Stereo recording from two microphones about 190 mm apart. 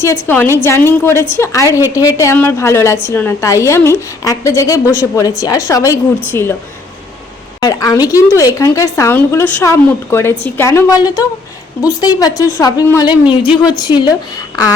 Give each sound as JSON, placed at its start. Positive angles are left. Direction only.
{"t": 0.0, "sound": "a woman's voice", "side_deg": 15}
{"t": 7.6, "sound": "a woman's voice", "side_deg": 20}